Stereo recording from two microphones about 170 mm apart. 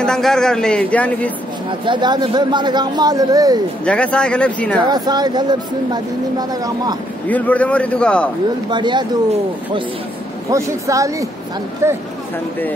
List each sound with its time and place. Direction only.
0.0 s a man's voice: 5° left (ahead or behind)
1.9 s speech: 25° right (ahead or behind)
3.8 s speech: 5° left (ahead or behind)
4.8 s speech: 25° right (ahead or behind)
7.2 s speech: 10° left (ahead or behind)
8.6 s speech: 25° right (ahead or behind)
10.5 s speech: 20° right (ahead or behind)